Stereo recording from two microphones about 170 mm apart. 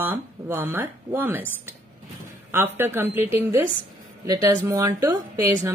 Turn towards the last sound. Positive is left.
turn(degrees=-20)  # may be behind; listen again after turning